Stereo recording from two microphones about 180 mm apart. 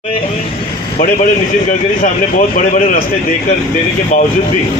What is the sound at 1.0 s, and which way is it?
Speech, 45° left (ahead or behind).